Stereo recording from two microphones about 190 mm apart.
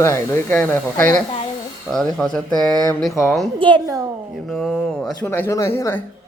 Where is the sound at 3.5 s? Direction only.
25° right (ahead or behind).